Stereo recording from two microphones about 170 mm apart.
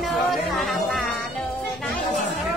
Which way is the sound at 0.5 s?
Centre (ahead or behind).